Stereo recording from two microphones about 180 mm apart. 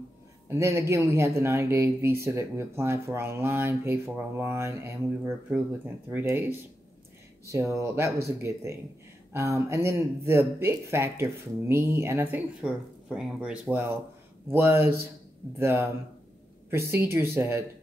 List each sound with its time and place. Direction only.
0.5 s speech: 15° right (ahead or behind)
7.4 s speech: 15° right (ahead or behind)